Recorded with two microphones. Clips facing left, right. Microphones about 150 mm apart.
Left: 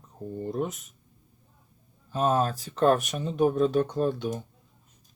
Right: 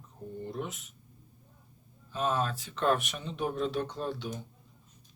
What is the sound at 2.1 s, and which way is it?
Speech, 45° left (ahead or behind).